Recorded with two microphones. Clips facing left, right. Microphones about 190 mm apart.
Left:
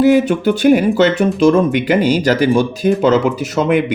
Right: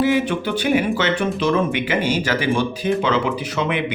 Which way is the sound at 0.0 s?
40° left (ahead or behind).